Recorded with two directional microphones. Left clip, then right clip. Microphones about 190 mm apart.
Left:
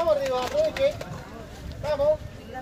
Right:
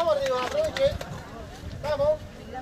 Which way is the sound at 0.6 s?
25° right (ahead or behind).